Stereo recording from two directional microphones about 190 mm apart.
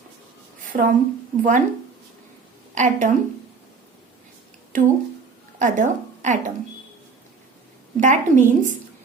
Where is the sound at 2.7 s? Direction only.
40° right (ahead or behind).